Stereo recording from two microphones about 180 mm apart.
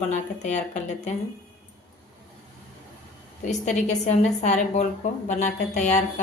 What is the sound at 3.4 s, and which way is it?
A woman's voice, 40° left (ahead or behind).